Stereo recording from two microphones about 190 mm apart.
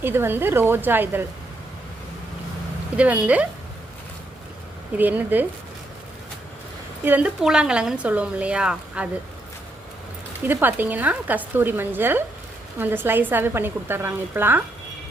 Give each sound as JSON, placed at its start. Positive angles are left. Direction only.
{"t": 0.0, "sound": "speech", "side_deg": -10}
{"t": 3.0, "sound": "speech", "side_deg": -5}
{"t": 4.9, "sound": "speech", "side_deg": -10}
{"t": 7.0, "sound": "speech", "side_deg": -10}
{"t": 10.4, "sound": "speech", "side_deg": -10}